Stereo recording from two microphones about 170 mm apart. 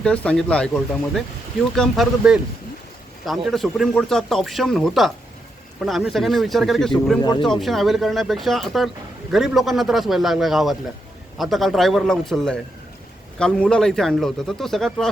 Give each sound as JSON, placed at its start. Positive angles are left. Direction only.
{"t": 0.0, "sound": "speech", "side_deg": 5}
{"t": 7.2, "sound": "speech", "side_deg": 25}
{"t": 7.4, "sound": "speech", "side_deg": 0}